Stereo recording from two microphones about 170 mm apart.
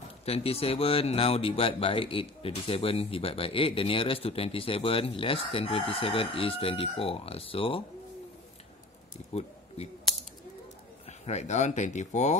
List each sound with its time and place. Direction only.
0.2 s speech: 35° left (ahead or behind)
11.1 s speech: 40° left (ahead or behind)